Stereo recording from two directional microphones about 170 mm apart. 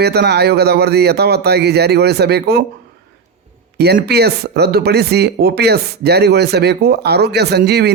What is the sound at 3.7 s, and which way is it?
Speech, 70° right (ahead or behind).